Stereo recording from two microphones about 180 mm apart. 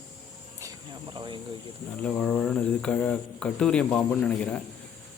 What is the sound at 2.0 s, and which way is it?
A man's voice, 5° left (ahead or behind).